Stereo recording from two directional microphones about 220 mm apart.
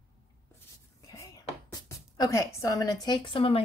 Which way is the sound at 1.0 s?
15° left (ahead or behind).